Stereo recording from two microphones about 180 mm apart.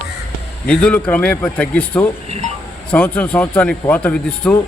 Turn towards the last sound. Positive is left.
turn(degrees=5)  # may be behind; listen again after turning